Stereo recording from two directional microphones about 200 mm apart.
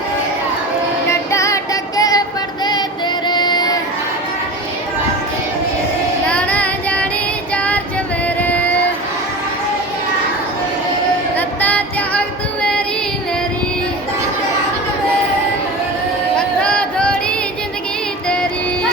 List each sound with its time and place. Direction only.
1.3 s music: 15° left (ahead or behind)
3.2 s child singing: 20° left (ahead or behind)
6.2 s child singing: 5° left (ahead or behind)
8.4 s a sound: 5° left (ahead or behind)
11.3 s female singing: 10° left (ahead or behind)
16.6 s a sound: 5° left (ahead or behind)